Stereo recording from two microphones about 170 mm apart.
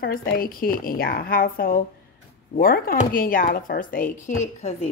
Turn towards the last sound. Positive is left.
turn(degrees=45)  # may be behind; listen again after turning